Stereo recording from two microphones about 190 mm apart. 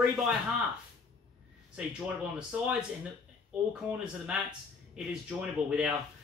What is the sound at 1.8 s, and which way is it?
Speech, 5° right (ahead or behind).